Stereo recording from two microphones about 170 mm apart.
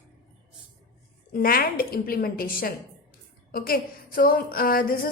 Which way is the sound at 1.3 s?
60° left (ahead or behind).